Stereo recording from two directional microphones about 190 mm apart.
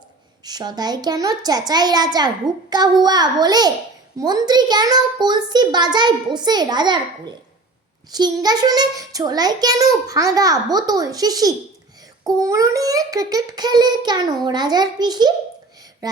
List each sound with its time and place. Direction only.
0.4 s a child's voice: 20° right (ahead or behind)